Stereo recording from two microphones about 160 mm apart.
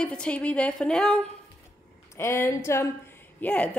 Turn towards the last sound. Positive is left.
turn(degrees=10)  # may be behind; listen again after turning